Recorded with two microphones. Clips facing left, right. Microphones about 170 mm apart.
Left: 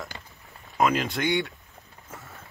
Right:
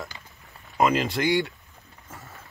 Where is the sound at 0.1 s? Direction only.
65° left (ahead or behind).